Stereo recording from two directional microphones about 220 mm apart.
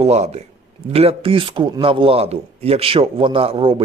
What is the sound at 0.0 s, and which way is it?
A man's voice, 30° right (ahead or behind).